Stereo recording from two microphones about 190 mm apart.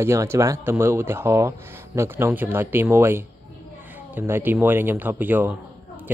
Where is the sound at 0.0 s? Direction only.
15° right (ahead or behind).